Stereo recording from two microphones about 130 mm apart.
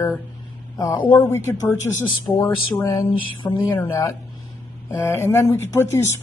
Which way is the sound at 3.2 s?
40° left (ahead or behind).